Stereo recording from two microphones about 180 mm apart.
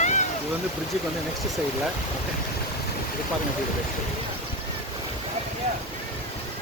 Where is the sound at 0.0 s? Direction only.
40° left (ahead or behind).